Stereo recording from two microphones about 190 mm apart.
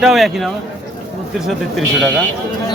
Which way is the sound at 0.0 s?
Centre (ahead or behind).